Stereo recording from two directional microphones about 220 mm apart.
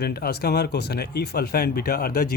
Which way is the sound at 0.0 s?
45° left (ahead or behind).